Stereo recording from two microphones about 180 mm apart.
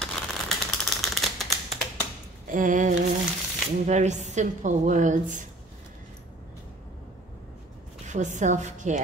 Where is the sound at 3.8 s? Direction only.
40° right (ahead or behind).